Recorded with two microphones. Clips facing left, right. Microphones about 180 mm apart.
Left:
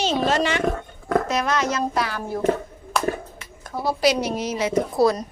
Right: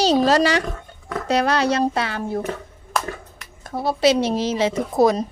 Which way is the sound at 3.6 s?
25° right (ahead or behind).